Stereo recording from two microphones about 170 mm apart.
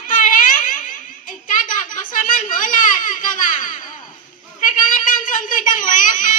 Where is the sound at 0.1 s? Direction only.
50° left (ahead or behind).